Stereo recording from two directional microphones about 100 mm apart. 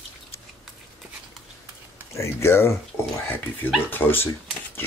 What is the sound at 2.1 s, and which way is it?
Speech, 25° left (ahead or behind).